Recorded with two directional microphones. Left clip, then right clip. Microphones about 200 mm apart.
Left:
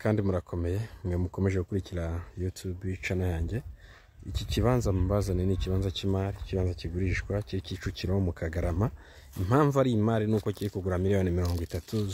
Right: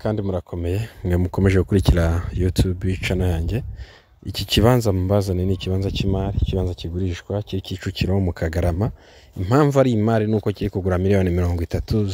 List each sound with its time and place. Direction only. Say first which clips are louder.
0.0 s speech: right 5 dB; 15° right (ahead or behind)
0.7 s speech: right 9 dB; 40° right (ahead or behind)